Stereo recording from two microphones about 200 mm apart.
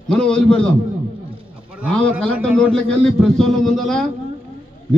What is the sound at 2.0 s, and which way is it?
A man's voice, 5° left (ahead or behind).